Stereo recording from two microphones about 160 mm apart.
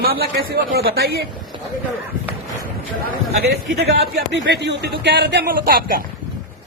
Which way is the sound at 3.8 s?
90° right.